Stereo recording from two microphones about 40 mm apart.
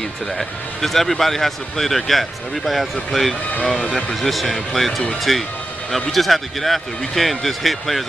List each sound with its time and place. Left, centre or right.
0.4 s speech: centre